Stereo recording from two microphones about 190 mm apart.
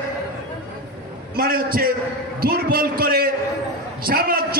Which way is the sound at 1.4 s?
50° right (ahead or behind).